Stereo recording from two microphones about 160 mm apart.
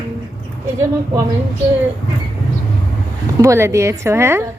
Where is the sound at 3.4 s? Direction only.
20° right (ahead or behind).